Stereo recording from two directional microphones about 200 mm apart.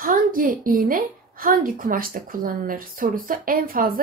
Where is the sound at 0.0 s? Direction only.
45° right (ahead or behind).